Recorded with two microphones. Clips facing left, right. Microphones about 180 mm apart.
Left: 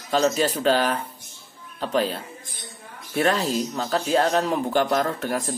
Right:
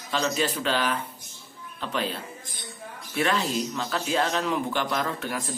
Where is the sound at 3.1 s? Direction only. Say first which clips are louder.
Left 4 dB; 40° left (ahead or behind).